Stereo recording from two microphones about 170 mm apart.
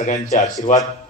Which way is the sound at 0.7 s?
50° left (ahead or behind).